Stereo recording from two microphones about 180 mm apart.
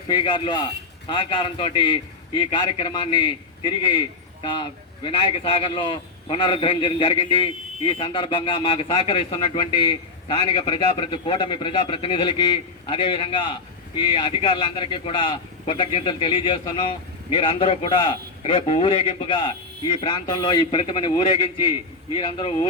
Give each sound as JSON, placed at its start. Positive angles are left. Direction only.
{"t": 0.1, "sound": "a man's voice", "side_deg": 25}
{"t": 5.0, "sound": "a man's voice", "side_deg": 30}